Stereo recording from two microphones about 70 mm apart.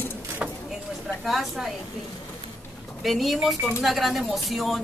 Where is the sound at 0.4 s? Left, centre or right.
Centre.